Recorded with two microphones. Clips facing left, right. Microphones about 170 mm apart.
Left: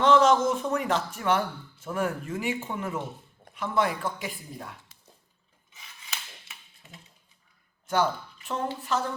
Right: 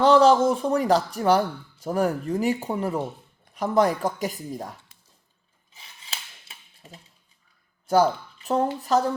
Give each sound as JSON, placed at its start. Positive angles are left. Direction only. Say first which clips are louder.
{"t": 0.0, "sound": "speech", "louder": "right 4 dB", "side_deg": -35}
{"t": 5.7, "sound": "a sound", "louder": "right 1 dB", "side_deg": -30}
{"t": 7.9, "sound": "speech", "louder": "right 6 dB", "side_deg": -35}